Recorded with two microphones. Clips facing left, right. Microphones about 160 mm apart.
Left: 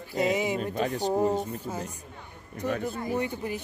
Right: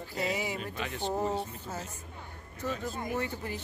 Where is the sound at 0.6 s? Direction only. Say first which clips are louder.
Left 8 dB; 40° left (ahead or behind).